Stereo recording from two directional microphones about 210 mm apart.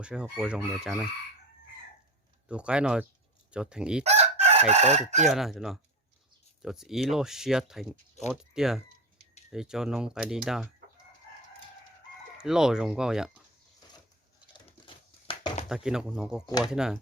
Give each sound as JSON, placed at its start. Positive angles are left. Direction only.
{"t": 0.0, "sound": "speech", "side_deg": -5}
{"t": 2.5, "sound": "speech", "side_deg": -5}
{"t": 4.0, "sound": "chicken", "side_deg": -30}
{"t": 5.2, "sound": "speech", "side_deg": 0}
{"t": 12.4, "sound": "speech", "side_deg": -5}
{"t": 14.5, "sound": "crumpling", "side_deg": 25}
{"t": 15.7, "sound": "speech", "side_deg": -5}